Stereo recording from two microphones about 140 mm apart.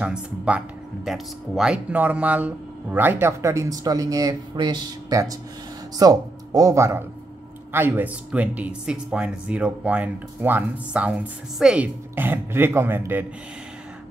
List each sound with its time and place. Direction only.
0.0 s speech: 10° right (ahead or behind)